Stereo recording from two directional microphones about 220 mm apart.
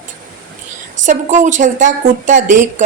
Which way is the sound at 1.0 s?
35° right (ahead or behind).